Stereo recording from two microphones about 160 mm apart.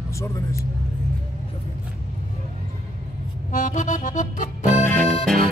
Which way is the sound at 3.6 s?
50° left (ahead or behind).